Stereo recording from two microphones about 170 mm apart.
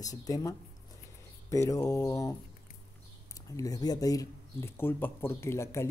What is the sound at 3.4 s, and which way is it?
Speech, 20° left (ahead or behind).